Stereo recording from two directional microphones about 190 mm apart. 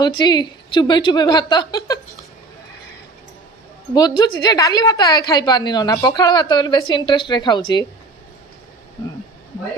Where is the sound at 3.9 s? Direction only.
20° left (ahead or behind).